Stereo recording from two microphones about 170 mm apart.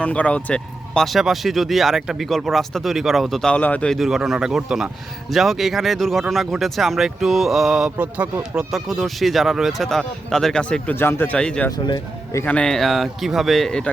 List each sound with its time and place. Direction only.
0.0 s speech: 5° left (ahead or behind)
11.9 s speech: 25° left (ahead or behind)
12.4 s speech: 10° left (ahead or behind)